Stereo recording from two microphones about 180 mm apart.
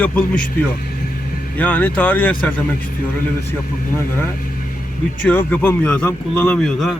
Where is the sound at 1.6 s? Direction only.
10° left (ahead or behind).